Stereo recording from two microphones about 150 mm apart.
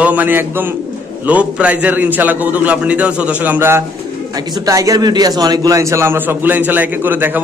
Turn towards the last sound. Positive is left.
turn(degrees=-10)  # may be behind; listen again after turning